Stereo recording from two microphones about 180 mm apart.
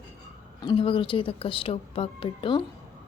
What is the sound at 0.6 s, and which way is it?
A woman's voice, 25° left (ahead or behind).